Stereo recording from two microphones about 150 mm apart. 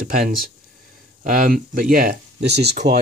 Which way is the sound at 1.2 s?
65° right (ahead or behind).